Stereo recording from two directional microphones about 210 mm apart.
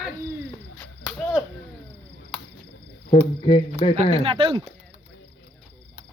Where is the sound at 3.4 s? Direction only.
25° left (ahead or behind).